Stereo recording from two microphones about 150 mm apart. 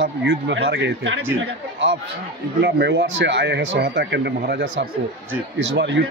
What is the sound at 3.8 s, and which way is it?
Speech, 90° right.